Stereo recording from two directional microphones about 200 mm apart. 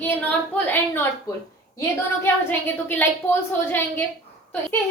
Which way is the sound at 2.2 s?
10° left (ahead or behind).